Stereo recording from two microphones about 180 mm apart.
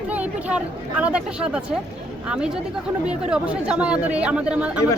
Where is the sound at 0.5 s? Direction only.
5° right (ahead or behind).